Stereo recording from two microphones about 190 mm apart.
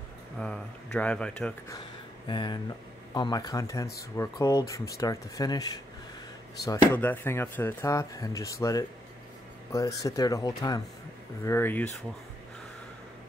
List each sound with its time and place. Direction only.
0.4 s speech: 5° left (ahead or behind)
2.2 s speech: 25° left (ahead or behind)